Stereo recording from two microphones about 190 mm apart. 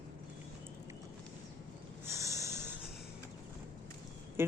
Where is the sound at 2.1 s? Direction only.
15° right (ahead or behind).